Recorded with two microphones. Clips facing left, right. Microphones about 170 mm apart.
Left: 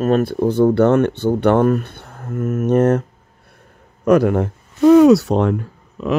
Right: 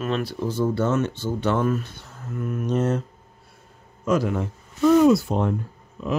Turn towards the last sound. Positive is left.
turn(degrees=80)